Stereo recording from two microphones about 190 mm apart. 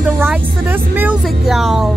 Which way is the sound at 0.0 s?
10° right (ahead or behind).